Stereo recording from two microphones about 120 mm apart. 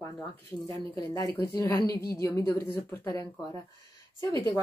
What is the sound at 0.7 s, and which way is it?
A woman's voice, 25° left (ahead or behind).